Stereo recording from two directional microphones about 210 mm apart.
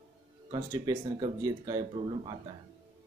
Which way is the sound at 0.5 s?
20° right (ahead or behind).